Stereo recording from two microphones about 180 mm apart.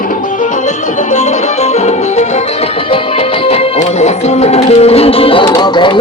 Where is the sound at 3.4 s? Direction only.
35° left (ahead or behind).